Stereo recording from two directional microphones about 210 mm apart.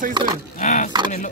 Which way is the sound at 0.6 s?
35° left (ahead or behind).